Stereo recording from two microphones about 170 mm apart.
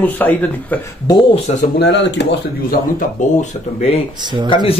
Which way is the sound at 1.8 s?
90° left.